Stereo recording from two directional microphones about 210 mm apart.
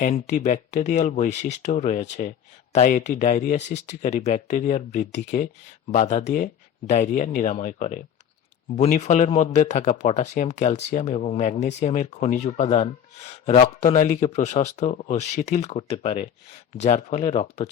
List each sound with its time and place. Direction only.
0.0 s speech: 35° left (ahead or behind)